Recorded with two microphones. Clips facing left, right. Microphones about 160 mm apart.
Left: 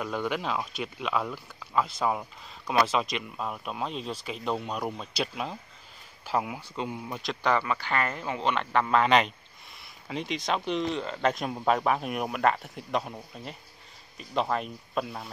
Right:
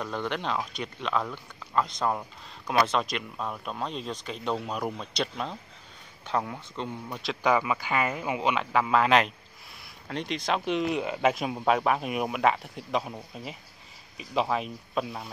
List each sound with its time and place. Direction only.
0.0 s speech: 5° left (ahead or behind)